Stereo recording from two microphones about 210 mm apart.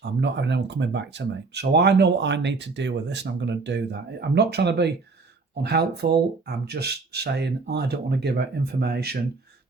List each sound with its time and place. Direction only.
0.0 s speech: 55° right (ahead or behind)